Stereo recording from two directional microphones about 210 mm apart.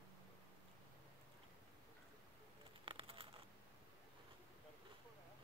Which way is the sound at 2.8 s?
25° right (ahead or behind).